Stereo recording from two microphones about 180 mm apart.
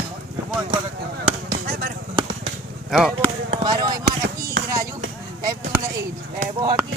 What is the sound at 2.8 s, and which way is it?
Speech, centre (ahead or behind).